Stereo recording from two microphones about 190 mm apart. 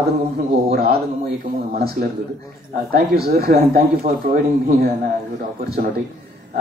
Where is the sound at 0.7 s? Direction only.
55° right (ahead or behind).